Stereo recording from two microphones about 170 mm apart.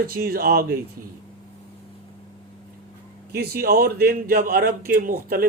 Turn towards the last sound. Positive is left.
turn(degrees=-55)  # may be behind; listen again after turning